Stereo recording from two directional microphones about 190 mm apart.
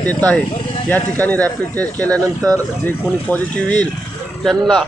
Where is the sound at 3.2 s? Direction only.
10° left (ahead or behind).